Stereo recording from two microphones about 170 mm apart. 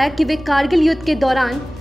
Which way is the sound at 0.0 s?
Centre (ahead or behind).